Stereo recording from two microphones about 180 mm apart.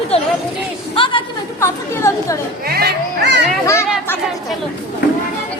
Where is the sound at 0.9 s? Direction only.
30° left (ahead or behind).